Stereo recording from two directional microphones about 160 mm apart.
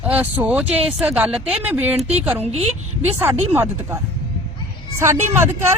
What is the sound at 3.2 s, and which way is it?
Speech, 15° right (ahead or behind).